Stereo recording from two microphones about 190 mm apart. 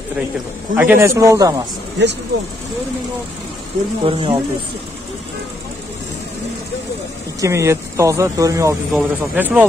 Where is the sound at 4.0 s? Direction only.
30° right (ahead or behind).